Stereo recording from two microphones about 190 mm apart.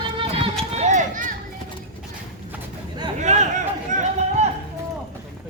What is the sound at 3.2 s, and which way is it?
Speech, 35° right (ahead or behind).